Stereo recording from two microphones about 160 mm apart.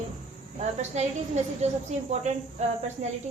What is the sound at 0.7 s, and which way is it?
A woman's voice, 45° right (ahead or behind).